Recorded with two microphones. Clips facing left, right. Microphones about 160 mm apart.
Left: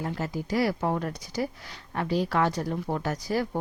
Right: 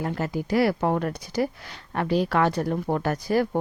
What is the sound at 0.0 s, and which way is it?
Speech, 65° right (ahead or behind).